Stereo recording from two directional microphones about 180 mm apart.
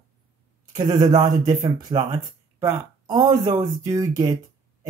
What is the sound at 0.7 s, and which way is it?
Speech, 20° right (ahead or behind).